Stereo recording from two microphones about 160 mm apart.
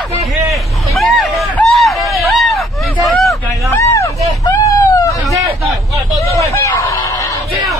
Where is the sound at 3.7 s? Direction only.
20° left (ahead or behind).